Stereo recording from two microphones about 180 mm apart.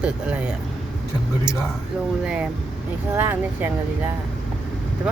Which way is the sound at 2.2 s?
5° right (ahead or behind).